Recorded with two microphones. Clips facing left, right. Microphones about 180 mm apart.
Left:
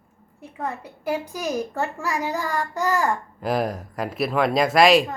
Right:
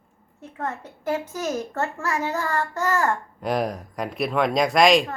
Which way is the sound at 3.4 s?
Centre (ahead or behind).